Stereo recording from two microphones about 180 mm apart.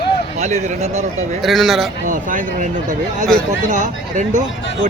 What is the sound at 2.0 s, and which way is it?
Speech, 45° right (ahead or behind).